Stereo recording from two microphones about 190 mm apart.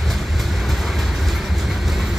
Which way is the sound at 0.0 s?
Centre (ahead or behind).